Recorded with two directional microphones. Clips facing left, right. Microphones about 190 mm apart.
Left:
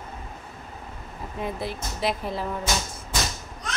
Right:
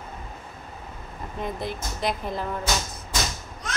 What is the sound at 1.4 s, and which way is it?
Speech, 5° left (ahead or behind).